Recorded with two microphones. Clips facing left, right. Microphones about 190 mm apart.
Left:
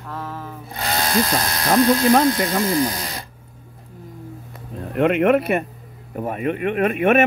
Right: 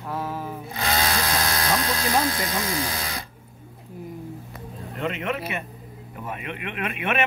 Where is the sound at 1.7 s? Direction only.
60° left (ahead or behind).